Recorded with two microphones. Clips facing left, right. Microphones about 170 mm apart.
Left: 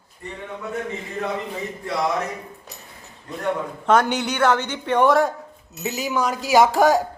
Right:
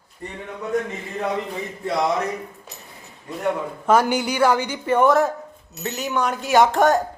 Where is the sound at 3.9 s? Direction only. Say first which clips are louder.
Right 1 dB; 5° right (ahead or behind).